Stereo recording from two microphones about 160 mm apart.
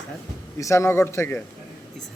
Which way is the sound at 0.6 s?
20° left (ahead or behind).